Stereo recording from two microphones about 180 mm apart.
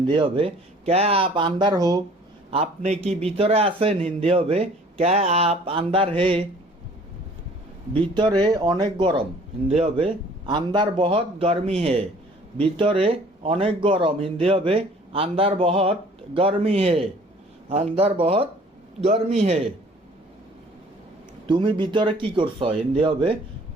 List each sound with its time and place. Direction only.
0.1 s speech: 30° right (ahead or behind)
2.5 s speech: 35° right (ahead or behind)
7.9 s speech: 25° right (ahead or behind)
21.4 s speech: 25° right (ahead or behind)